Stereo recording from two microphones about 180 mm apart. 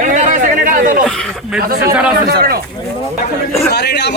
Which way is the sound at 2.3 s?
60° right (ahead or behind).